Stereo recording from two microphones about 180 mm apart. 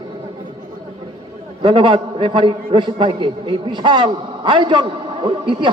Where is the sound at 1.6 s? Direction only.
30° right (ahead or behind).